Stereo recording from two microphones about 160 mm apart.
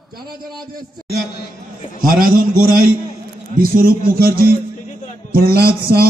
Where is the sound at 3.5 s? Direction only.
65° right (ahead or behind).